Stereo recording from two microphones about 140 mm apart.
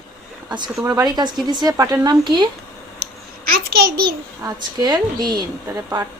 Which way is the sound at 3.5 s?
90° right.